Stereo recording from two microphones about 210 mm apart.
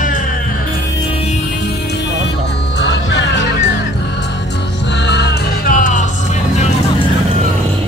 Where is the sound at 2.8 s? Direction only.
55° left (ahead or behind).